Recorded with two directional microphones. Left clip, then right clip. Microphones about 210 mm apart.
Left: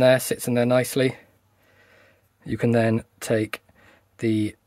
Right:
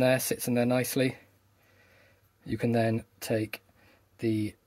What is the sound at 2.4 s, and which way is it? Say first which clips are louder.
Speech: left 6 dB; 25° left (ahead or behind).